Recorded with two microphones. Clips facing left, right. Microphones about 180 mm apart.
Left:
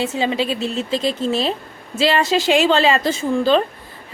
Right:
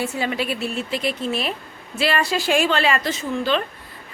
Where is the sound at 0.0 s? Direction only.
20° left (ahead or behind).